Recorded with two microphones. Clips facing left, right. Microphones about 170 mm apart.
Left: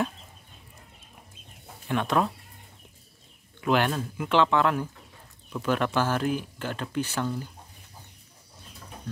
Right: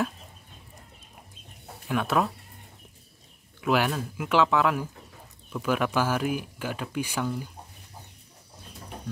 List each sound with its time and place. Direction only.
1.9 s speech: 5° right (ahead or behind)
3.6 s speech: 5° right (ahead or behind)